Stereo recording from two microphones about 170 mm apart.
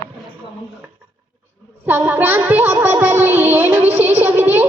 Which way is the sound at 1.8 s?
10° right (ahead or behind).